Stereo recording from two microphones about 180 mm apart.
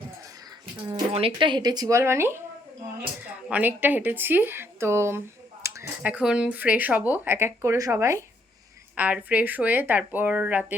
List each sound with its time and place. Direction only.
0.9 s speech: 30° right (ahead or behind); by 2.4 s 15° right (ahead or behind)
3.5 s speech: 10° right (ahead or behind)